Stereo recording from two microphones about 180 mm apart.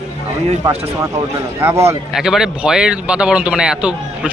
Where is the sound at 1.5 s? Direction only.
15° right (ahead or behind).